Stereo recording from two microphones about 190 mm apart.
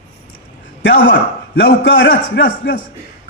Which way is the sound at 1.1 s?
80° left.